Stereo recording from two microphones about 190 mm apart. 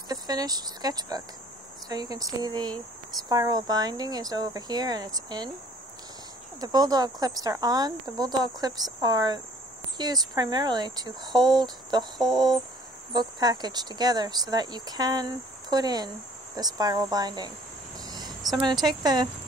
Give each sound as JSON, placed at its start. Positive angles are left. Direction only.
{"t": 0.1, "sound": "speech", "side_deg": -20}
{"t": 6.6, "sound": "speech", "side_deg": -20}
{"t": 17.9, "sound": "cricket", "side_deg": -20}
{"t": 18.9, "sound": "speech", "side_deg": -20}